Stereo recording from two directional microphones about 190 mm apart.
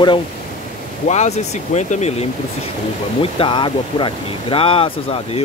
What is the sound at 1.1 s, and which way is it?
Speech, 35° left (ahead or behind).